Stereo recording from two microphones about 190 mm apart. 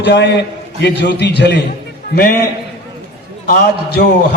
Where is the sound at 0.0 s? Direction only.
65° left (ahead or behind).